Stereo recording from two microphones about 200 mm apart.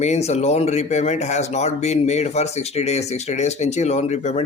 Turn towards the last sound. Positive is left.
turn(degrees=35)  # may be behind; listen again after turning